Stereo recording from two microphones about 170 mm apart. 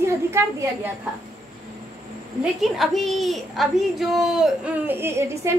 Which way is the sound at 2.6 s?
Centre (ahead or behind).